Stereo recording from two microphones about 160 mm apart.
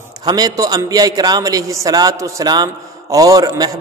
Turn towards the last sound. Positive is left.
turn(degrees=-25)  # may be behind; listen again after turning